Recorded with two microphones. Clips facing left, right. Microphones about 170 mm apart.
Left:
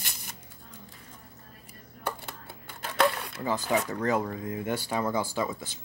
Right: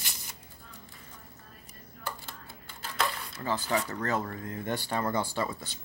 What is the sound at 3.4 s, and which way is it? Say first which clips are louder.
Speech: left 3 dB; 15° left (ahead or behind).